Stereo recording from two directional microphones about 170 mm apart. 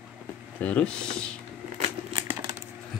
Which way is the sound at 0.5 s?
5° left (ahead or behind).